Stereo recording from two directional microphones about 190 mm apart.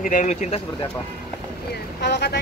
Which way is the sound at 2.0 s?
60° left (ahead or behind).